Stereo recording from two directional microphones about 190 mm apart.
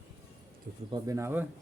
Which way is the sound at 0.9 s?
15° right (ahead or behind).